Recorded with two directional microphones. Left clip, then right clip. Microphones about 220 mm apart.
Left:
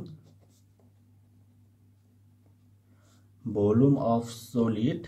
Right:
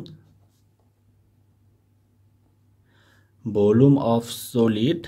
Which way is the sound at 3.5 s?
45° right (ahead or behind).